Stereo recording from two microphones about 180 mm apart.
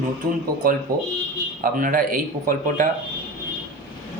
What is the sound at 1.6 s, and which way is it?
Speech, 50° right (ahead or behind).